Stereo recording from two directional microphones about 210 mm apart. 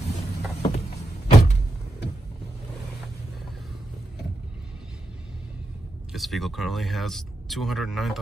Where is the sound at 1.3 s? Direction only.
30° left (ahead or behind).